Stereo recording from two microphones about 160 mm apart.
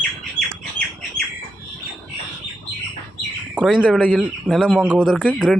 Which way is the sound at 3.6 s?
5° right (ahead or behind).